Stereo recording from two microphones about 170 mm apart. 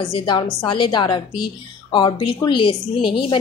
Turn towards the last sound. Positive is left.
turn(degrees=30)  # may be behind; listen again after turning